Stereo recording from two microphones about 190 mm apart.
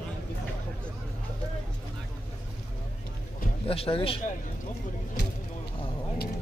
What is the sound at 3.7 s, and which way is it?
Speech, 30° left (ahead or behind).